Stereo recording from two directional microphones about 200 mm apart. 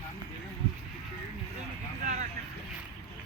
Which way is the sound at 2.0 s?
40° right (ahead or behind).